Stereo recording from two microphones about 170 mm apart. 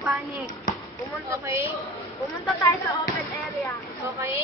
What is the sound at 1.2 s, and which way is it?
Speech, 15° right (ahead or behind).